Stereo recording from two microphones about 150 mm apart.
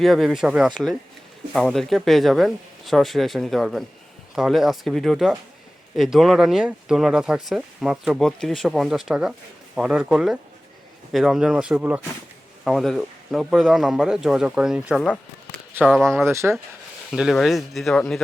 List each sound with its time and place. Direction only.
0.0 s speech: centre (ahead or behind)
12.6 s speech: centre (ahead or behind)
16.2 s speech: 20° right (ahead or behind)
17.1 s speech: 5° right (ahead or behind)